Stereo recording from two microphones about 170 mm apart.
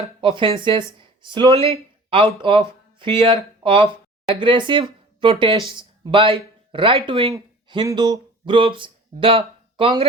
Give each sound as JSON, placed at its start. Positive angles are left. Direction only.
{"t": 0.3, "sound": "speech", "side_deg": -30}